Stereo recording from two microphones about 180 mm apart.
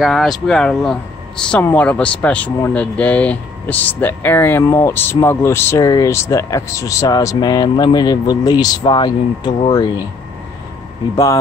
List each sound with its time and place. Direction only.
0.0 s speech: centre (ahead or behind); by 9.8 s 25° left (ahead or behind)